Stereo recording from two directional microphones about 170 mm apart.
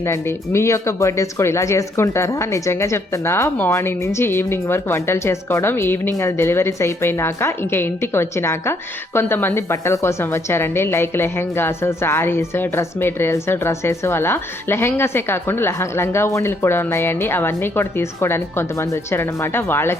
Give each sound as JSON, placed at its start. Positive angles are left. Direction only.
{"t": 0.0, "sound": "a woman's voice", "side_deg": 15}